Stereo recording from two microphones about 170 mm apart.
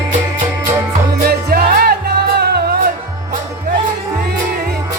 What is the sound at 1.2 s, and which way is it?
Music, 60° right (ahead or behind).